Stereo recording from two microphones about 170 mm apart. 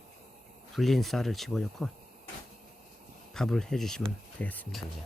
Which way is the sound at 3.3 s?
5° left (ahead or behind).